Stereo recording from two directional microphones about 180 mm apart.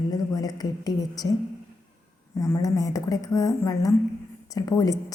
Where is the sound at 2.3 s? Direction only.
15° left (ahead or behind).